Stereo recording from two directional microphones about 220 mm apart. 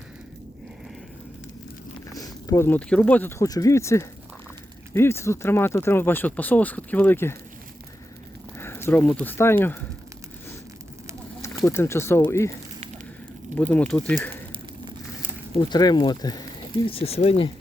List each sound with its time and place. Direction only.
2.1 s speech: 15° left (ahead or behind)
8.5 s a sound: 10° left (ahead or behind)
9.2 s speech: 10° left (ahead or behind)
11.4 s speech: 10° left (ahead or behind)
13.6 s speech: 5° left (ahead or behind)
15.7 s speech: 20° left (ahead or behind)